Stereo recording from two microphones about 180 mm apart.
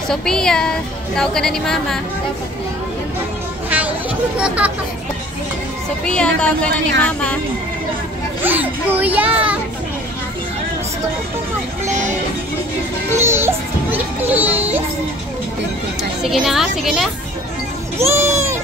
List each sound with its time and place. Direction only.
0.1 s a woman's voice: 5° left (ahead or behind)
4.4 s a child's voice: 5° right (ahead or behind)
6.0 s a woman's voice: 5° left (ahead or behind)
8.4 s a child's voice: 10° right (ahead or behind)
13.1 s a child's voice: 15° right (ahead or behind)
16.3 s a woman's voice: centre (ahead or behind)
17.9 s a child's voice: 15° right (ahead or behind)